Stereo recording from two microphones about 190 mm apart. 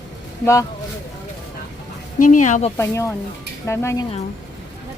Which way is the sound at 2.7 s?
15° left (ahead or behind).